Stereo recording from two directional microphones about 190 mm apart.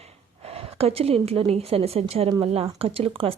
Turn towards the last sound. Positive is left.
turn(degrees=-30)  # may be behind; listen again after turning